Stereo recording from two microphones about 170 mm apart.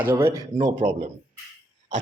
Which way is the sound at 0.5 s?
50° right (ahead or behind).